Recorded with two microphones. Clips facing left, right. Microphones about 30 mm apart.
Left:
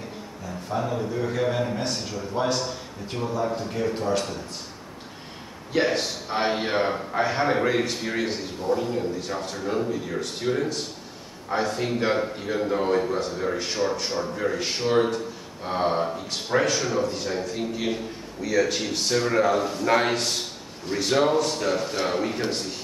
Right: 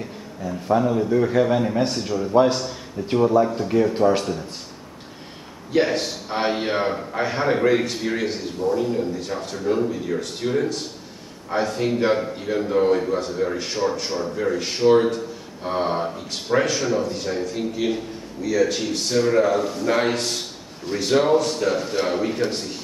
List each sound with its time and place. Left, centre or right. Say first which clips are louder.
0.7 s a man's voice: right 7 dB; centre
3.1 s a man's voice: right 11 dB; right
3.7 s a man's voice: right 8 dB; centre
5.7 s a man's voice: right 3 dB; centre